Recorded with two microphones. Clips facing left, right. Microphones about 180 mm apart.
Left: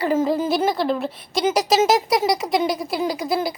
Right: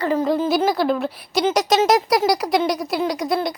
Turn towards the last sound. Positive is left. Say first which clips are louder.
# right 1 dB
turn(degrees=5)  # may be behind; listen again after turning